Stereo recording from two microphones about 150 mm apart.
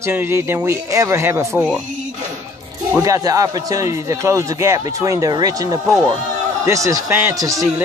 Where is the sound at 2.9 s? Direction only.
20° right (ahead or behind).